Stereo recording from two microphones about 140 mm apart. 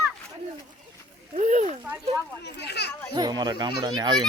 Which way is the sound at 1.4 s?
60° right (ahead or behind).